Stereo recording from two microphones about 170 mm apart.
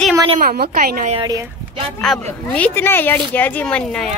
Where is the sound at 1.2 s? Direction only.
25° right (ahead or behind).